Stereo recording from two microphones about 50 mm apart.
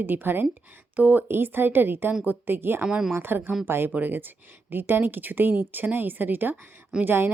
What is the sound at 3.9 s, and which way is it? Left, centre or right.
A woman's voice, right.